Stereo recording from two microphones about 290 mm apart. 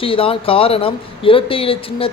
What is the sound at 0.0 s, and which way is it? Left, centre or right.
Speech, centre.